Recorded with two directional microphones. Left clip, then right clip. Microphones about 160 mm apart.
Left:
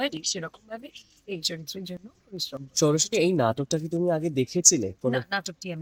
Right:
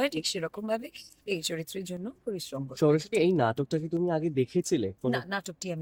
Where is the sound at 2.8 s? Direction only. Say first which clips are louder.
Left 1 dB; 90° left.